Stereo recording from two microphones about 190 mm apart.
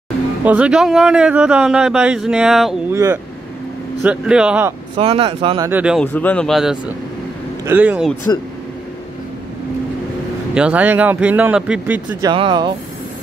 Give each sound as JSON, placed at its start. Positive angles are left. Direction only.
{"t": 0.5, "sound": "speech", "side_deg": -5}
{"t": 2.9, "sound": "speech", "side_deg": -15}
{"t": 4.9, "sound": "speech", "side_deg": -30}
{"t": 5.7, "sound": "speech", "side_deg": -10}
{"t": 5.9, "sound": "speech", "side_deg": 5}
{"t": 10.5, "sound": "speech", "side_deg": -5}
{"t": 12.2, "sound": "speech", "side_deg": -25}